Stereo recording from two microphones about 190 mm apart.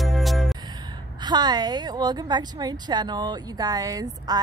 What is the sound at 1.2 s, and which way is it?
A woman's voice, 20° right (ahead or behind).